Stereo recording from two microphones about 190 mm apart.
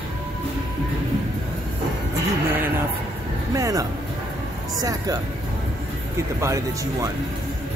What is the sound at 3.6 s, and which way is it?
Music, 15° right (ahead or behind).